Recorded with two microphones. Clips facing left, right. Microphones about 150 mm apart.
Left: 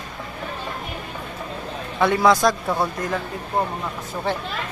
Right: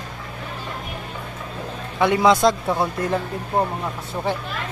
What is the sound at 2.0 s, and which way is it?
Speech, 20° right (ahead or behind).